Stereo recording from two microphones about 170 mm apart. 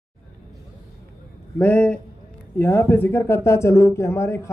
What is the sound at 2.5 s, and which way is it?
Speech, 10° left (ahead or behind).